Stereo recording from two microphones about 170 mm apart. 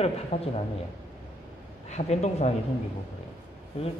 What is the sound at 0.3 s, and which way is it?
Speech, 40° left (ahead or behind).